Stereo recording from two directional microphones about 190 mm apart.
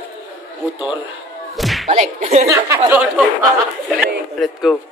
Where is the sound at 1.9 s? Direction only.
35° right (ahead or behind).